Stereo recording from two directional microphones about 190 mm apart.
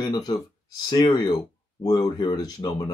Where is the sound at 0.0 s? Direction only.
20° left (ahead or behind).